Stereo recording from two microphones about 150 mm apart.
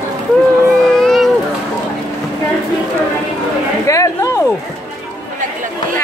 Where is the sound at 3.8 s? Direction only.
20° left (ahead or behind).